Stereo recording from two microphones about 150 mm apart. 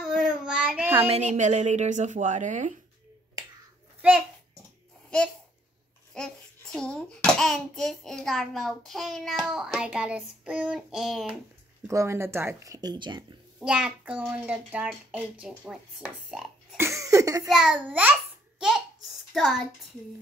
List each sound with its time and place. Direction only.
0.0 s child singing: 5° right (ahead or behind)
1.0 s a woman's voice: 45° right (ahead or behind)
6.1 s a child's voice: 5° left (ahead or behind)
11.9 s speech: 20° right (ahead or behind)
13.6 s a child's voice: 5° right (ahead or behind)
16.7 s cough: 20° right (ahead or behind)
17.5 s speech: 5° right (ahead or behind)
19.3 s a child's voice: centre (ahead or behind)